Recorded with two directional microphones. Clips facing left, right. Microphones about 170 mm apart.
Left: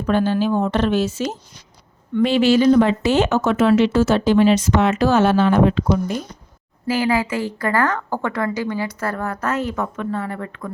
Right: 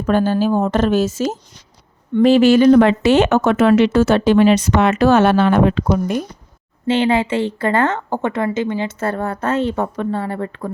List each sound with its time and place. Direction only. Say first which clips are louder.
0.0 s a woman's voice: right 2 dB; 45° right (ahead or behind); by 6.2 s 60° right (ahead or behind)
6.8 s speech: right 3 dB; 25° right (ahead or behind)